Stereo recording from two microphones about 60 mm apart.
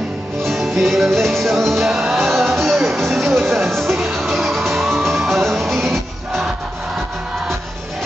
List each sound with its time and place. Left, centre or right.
0.4 s music: centre